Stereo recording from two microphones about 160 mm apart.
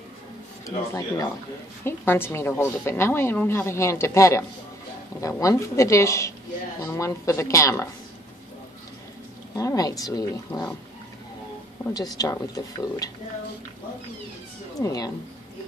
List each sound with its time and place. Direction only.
0.7 s a woman's voice: 20° left (ahead or behind)
9.6 s a woman's voice: 20° left (ahead or behind)
11.9 s a woman's voice: 25° left (ahead or behind)
14.8 s a woman's voice: 20° left (ahead or behind)